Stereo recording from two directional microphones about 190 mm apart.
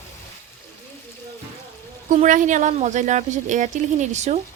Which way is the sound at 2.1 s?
40° right (ahead or behind).